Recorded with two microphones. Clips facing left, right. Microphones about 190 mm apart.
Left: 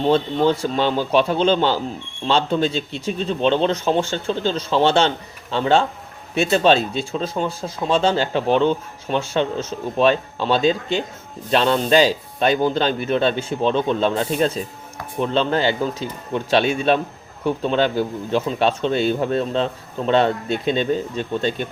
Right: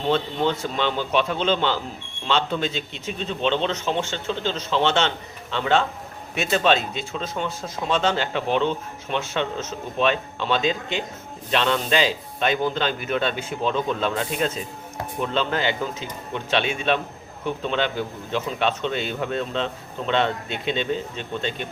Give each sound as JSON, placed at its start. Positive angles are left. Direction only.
{"t": 0.6, "sound": "speech", "side_deg": 35}